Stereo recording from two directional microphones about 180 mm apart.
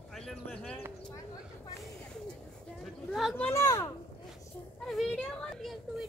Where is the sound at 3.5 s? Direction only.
15° left (ahead or behind).